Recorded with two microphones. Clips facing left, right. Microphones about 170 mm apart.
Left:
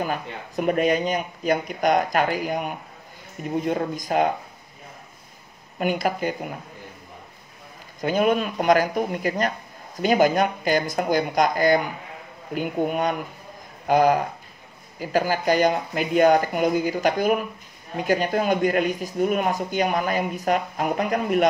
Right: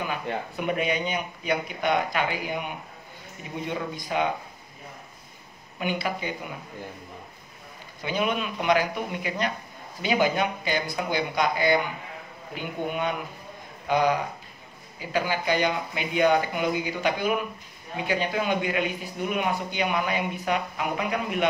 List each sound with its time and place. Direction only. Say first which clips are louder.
0.0 s speech: left 2 dB; 40° left (ahead or behind)
5.8 s speech: left 5 dB; 45° left (ahead or behind)
8.0 s speech: left 6 dB; 45° left (ahead or behind)